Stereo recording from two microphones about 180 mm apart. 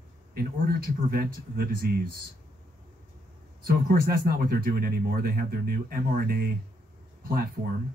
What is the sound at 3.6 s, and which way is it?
Speech, 55° right (ahead or behind).